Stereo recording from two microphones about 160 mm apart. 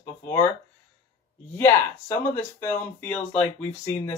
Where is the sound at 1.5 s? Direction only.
15° left (ahead or behind).